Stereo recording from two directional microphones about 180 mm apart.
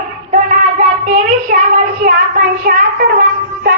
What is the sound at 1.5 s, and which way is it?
Child singing, 60° right (ahead or behind).